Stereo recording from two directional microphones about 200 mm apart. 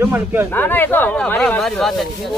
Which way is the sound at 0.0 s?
10° right (ahead or behind).